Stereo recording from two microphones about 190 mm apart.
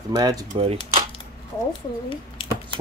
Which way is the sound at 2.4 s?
30° left (ahead or behind).